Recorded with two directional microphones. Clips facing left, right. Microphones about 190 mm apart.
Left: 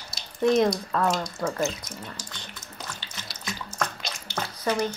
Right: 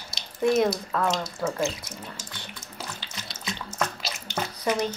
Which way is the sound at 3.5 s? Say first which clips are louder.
Right 1 dB; centre (ahead or behind).